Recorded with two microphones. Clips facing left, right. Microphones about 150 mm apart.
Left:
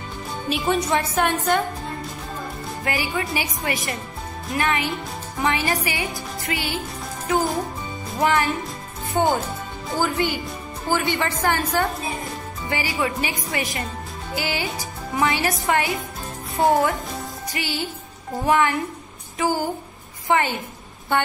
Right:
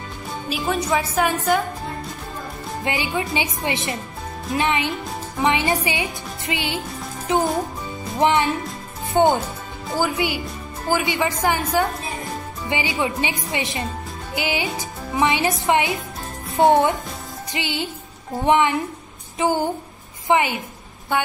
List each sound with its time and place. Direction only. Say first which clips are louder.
0.5 s a woman's voice: left 1 dB; centre (ahead or behind)
2.8 s a woman's voice: right 2 dB; 20° right (ahead or behind)
9.8 s a man's voice: right 1 dB; centre (ahead or behind)